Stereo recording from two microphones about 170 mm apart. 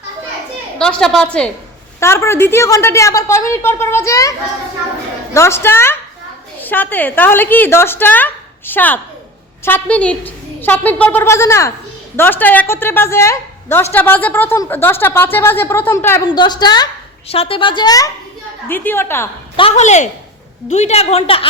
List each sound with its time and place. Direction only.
0.8 s a woman's voice: 5° left (ahead or behind)
2.0 s a woman's voice: 15° left (ahead or behind)
16.3 s a woman's voice: 25° left (ahead or behind)
17.2 s a woman's voice: 35° left (ahead or behind)
18.7 s a woman's voice: 10° left (ahead or behind)
19.5 s a woman's voice: 35° left (ahead or behind)